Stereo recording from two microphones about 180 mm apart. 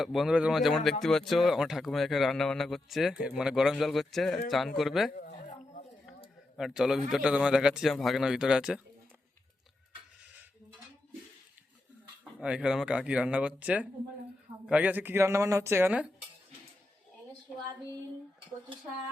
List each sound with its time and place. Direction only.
0.0 s speech: centre (ahead or behind)
6.6 s speech: 5° right (ahead or behind)
12.2 s speech: 5° right (ahead or behind)